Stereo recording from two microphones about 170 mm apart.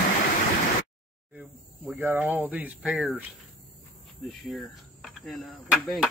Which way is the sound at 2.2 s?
Centre (ahead or behind).